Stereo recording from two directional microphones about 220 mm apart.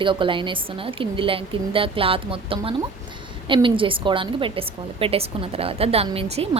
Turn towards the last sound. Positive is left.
turn(degrees=-25)  # may be behind; listen again after turning